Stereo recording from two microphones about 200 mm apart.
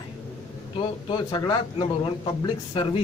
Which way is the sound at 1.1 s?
25° left (ahead or behind).